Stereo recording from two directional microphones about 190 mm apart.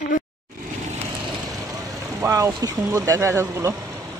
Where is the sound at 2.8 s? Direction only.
15° right (ahead or behind).